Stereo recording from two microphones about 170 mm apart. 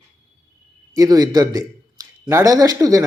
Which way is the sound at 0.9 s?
20° right (ahead or behind).